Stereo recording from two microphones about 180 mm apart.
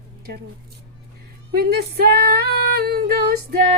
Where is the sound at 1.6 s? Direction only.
60° right (ahead or behind).